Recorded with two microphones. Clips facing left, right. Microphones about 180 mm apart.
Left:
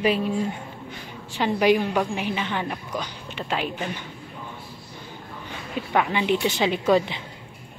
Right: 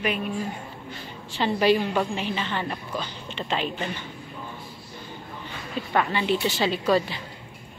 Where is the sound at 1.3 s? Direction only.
10° left (ahead or behind).